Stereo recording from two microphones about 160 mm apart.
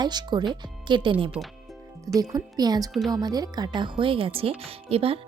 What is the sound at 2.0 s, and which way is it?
Speech, 20° right (ahead or behind).